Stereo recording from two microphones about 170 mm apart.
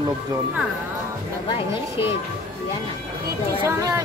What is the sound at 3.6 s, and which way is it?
Speech, 15° right (ahead or behind).